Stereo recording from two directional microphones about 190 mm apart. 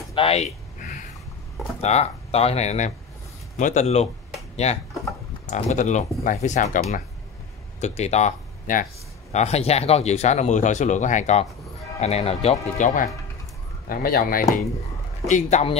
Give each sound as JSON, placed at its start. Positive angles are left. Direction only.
{"t": 0.1, "sound": "a sound", "side_deg": 30}
{"t": 1.8, "sound": "speech", "side_deg": 35}
{"t": 5.5, "sound": "a man's voice", "side_deg": 40}
{"t": 15.2, "sound": "speech", "side_deg": 40}